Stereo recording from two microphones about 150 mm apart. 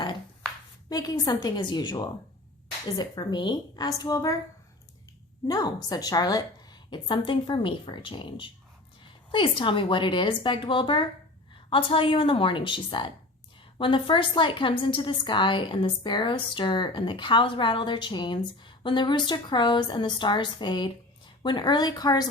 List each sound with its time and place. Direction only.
0.9 s a woman's voice: 25° left (ahead or behind)
5.5 s a woman's voice: 25° left (ahead or behind)